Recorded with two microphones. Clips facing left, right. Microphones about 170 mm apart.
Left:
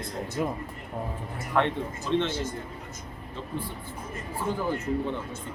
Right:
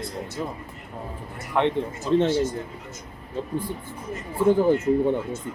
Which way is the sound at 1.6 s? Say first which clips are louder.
Right 3 dB; 15° right (ahead or behind).